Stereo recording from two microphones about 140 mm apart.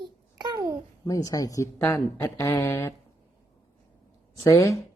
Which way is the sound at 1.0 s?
25° left (ahead or behind).